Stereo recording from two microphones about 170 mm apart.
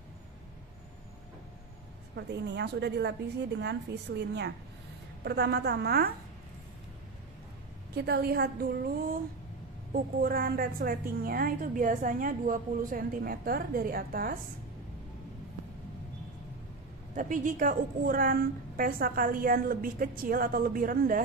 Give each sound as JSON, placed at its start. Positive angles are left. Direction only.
{"t": 2.1, "sound": "a woman's voice", "side_deg": -90}
{"t": 5.2, "sound": "a woman's voice", "side_deg": -70}
{"t": 7.9, "sound": "a woman's voice", "side_deg": -70}
{"t": 9.9, "sound": "a woman's voice", "side_deg": -60}
{"t": 17.1, "sound": "a woman's voice", "side_deg": -50}